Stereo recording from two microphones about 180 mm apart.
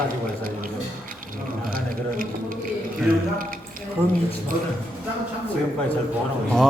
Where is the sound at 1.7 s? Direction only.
50° right (ahead or behind).